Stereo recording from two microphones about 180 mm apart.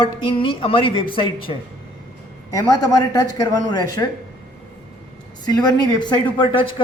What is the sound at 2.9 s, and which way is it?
Speech, 20° left (ahead or behind).